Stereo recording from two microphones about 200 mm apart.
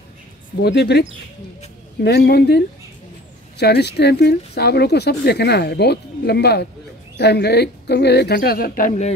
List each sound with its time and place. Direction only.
0.6 s speech: 55° left (ahead or behind)
2.0 s a woman's voice: 55° left (ahead or behind)